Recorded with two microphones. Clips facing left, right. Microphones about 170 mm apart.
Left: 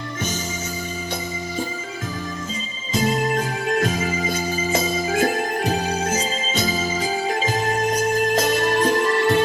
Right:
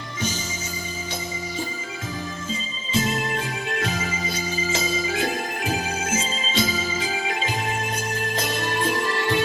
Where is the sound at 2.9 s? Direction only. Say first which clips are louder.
Left 4 dB; 40° left (ahead or behind).